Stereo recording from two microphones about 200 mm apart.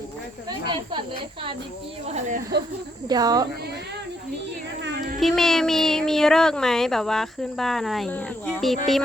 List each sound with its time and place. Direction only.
0.6 s speech: 25° right (ahead or behind)
2.0 s speech: 35° right (ahead or behind)
3.1 s speech: 20° right (ahead or behind)
4.8 s a sound: 60° right (ahead or behind)
5.2 s speech: centre (ahead or behind)